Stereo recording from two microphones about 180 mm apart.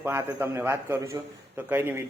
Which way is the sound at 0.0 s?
10° right (ahead or behind).